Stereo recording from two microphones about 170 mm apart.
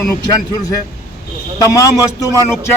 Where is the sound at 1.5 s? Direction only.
20° left (ahead or behind).